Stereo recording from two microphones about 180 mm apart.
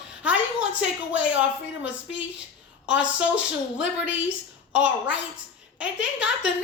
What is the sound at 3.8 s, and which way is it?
Speech, 90° left.